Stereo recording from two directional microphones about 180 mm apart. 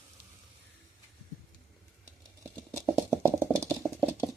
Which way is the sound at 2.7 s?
Centre (ahead or behind).